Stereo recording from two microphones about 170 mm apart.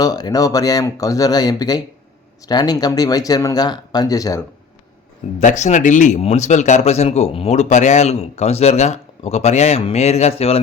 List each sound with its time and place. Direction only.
0.0 s speech: 20° left (ahead or behind)
5.4 s speech: 45° left (ahead or behind)